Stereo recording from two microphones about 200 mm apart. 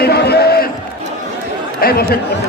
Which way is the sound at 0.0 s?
55° left (ahead or behind).